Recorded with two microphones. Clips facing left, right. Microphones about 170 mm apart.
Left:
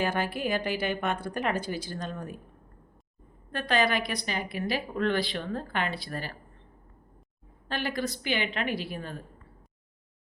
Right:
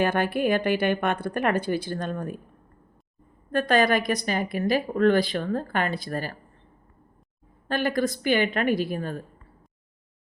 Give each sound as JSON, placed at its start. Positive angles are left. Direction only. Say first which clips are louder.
{"t": 0.0, "sound": "a woman's voice", "louder": "right 6 dB", "side_deg": -60}
{"t": 3.5, "sound": "a woman's voice", "louder": "right 6 dB", "side_deg": -45}
{"t": 7.7, "sound": "a woman's voice", "louder": "right 7 dB", "side_deg": -50}